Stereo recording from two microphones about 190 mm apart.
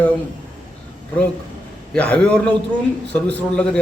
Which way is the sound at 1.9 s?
5° left (ahead or behind).